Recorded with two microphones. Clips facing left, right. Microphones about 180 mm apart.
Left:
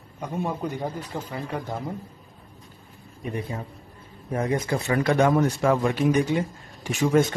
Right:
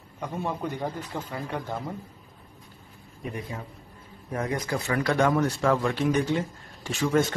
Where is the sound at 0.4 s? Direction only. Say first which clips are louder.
Left 2 dB; 10° left (ahead or behind).